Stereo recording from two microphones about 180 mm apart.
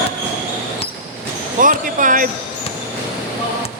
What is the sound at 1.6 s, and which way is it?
Basketball bounce, 45° right (ahead or behind).